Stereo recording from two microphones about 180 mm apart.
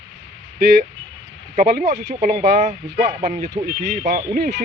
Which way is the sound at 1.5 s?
55° right (ahead or behind).